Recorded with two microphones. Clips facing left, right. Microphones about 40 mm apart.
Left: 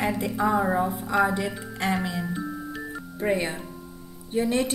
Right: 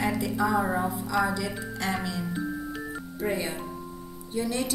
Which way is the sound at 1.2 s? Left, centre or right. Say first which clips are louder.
Left 3 dB; left.